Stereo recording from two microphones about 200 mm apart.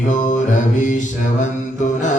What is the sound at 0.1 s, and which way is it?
Mantra, 40° left (ahead or behind).